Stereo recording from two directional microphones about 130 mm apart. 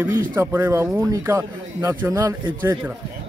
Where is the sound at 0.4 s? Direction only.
20° right (ahead or behind).